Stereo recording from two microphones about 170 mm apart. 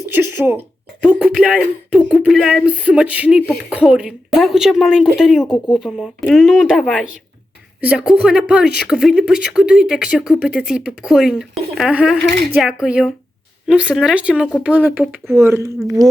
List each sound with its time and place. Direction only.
0.1 s speech: 10° right (ahead or behind)
1.0 s a sound: 5° right (ahead or behind)
14.6 s speech: 10° right (ahead or behind)